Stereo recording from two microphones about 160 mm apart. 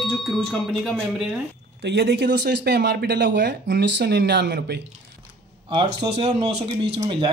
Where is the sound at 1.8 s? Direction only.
90° right.